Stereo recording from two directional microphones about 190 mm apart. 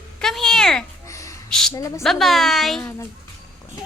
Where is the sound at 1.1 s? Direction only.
15° left (ahead or behind).